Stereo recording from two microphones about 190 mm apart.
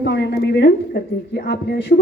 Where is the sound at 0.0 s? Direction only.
65° left (ahead or behind).